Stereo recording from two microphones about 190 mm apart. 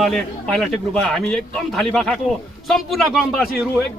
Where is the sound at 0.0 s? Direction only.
5° left (ahead or behind).